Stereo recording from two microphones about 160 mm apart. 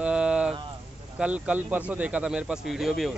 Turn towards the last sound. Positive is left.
turn(degrees=0)  # may be behind; listen again after turning